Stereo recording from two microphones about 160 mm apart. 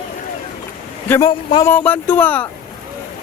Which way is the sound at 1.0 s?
15° left (ahead or behind).